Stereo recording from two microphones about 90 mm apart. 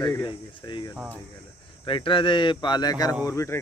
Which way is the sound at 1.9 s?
75° left (ahead or behind).